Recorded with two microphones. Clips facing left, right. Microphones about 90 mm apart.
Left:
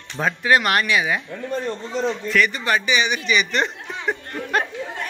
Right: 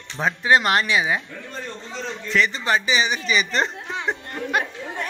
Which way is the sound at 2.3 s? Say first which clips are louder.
Right 1 dB; 25° right (ahead or behind).